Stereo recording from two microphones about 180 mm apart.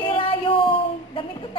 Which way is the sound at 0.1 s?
30° left (ahead or behind).